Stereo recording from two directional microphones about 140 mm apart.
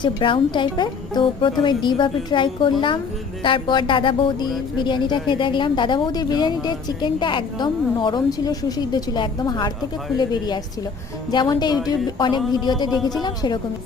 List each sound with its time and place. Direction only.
0.0 s a woman's voice: 35° left (ahead or behind)
13.0 s a woman's voice: centre (ahead or behind)
13.2 s speech: 30° left (ahead or behind)